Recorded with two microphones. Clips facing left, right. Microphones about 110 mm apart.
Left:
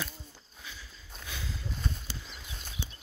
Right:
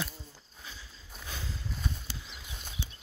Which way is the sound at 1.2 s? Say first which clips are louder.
Even; 30° right (ahead or behind).